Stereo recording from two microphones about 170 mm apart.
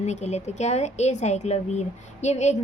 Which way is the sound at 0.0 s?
40° left (ahead or behind).